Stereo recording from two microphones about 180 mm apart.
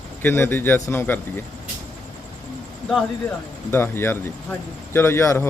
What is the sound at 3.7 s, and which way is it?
Speech, 15° left (ahead or behind).